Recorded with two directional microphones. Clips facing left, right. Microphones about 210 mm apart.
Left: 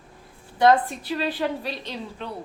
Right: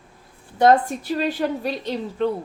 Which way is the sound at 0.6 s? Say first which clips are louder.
Right 2 dB; 45° right (ahead or behind).